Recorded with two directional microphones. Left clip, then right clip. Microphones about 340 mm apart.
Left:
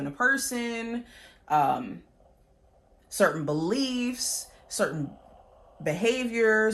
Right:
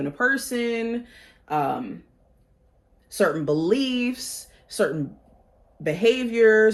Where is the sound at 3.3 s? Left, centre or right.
Centre.